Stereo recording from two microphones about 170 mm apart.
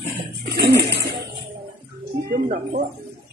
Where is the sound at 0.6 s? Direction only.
85° right.